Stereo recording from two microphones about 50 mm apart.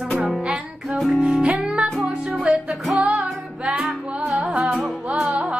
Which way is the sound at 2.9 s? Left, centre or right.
Right.